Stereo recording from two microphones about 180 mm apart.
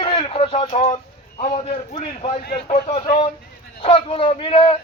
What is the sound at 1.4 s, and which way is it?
A man's voice, 45° left (ahead or behind).